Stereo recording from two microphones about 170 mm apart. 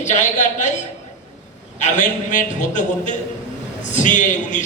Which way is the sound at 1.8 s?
45° left (ahead or behind).